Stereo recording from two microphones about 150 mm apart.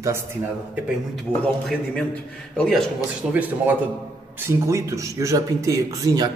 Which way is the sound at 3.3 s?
10° right (ahead or behind).